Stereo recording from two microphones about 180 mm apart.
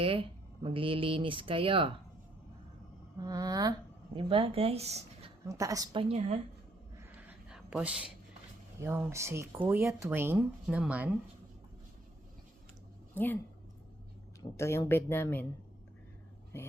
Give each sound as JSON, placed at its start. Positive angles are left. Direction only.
{"t": 0.0, "sound": "speech", "side_deg": -30}
{"t": 3.2, "sound": "speech", "side_deg": -20}
{"t": 5.5, "sound": "speech", "side_deg": -20}
{"t": 7.2, "sound": "a sound", "side_deg": -5}
{"t": 8.8, "sound": "speech", "side_deg": -15}
{"t": 13.1, "sound": "a woman's voice", "side_deg": 10}
{"t": 14.5, "sound": "a woman's voice", "side_deg": 15}